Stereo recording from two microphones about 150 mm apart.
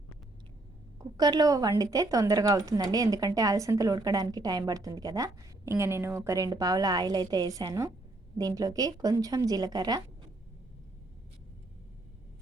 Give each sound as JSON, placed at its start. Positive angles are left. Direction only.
{"t": 1.1, "sound": "a woman's voice", "side_deg": -25}